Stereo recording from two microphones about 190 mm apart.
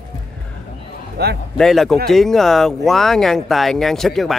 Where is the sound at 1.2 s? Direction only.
60° right (ahead or behind).